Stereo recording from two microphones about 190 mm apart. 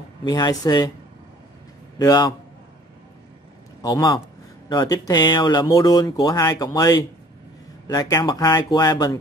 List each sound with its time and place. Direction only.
0.2 s speech: 20° left (ahead or behind)
2.0 s speech: 20° left (ahead or behind)
3.8 s speech: 20° left (ahead or behind)